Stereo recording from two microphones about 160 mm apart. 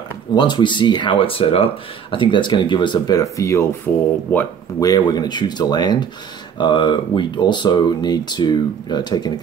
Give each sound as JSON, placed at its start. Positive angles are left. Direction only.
{"t": 0.3, "sound": "speech", "side_deg": 30}
{"t": 4.7, "sound": "speech", "side_deg": 25}